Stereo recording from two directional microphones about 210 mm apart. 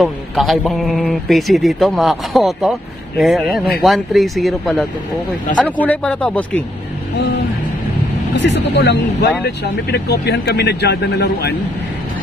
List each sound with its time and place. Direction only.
0.0 s a man's voice: centre (ahead or behind)
8.4 s speech: 55° left (ahead or behind)